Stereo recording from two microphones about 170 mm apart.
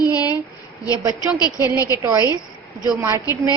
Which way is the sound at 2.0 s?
20° right (ahead or behind).